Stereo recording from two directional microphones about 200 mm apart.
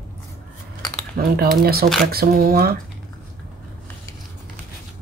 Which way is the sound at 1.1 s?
50° right (ahead or behind).